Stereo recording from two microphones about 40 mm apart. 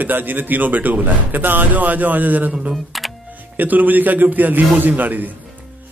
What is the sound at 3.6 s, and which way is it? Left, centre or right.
Speech, right.